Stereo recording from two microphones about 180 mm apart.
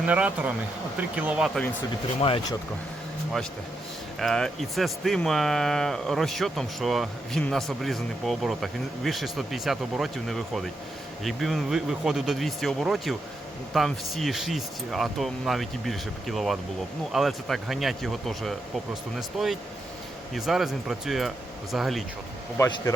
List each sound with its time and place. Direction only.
0.0 s speech: 10° right (ahead or behind)
2.2 s speech: 30° left (ahead or behind)
4.2 s speech: centre (ahead or behind)
22.5 s speech: 15° left (ahead or behind)